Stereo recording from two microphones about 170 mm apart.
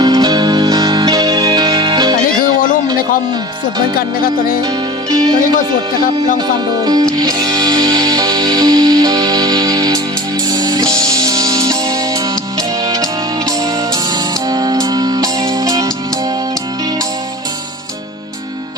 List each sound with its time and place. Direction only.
0.0 s music: 25° right (ahead or behind)
2.4 s music: 55° left (ahead or behind)
6.8 s music: 20° right (ahead or behind)
14.5 s music: 20° right (ahead or behind)